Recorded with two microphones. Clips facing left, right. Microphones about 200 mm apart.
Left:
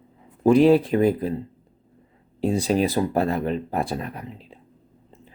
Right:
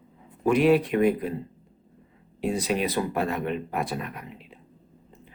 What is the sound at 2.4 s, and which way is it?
Speech, 30° left (ahead or behind).